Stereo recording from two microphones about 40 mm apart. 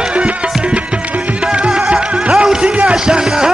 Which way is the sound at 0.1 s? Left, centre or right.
Right.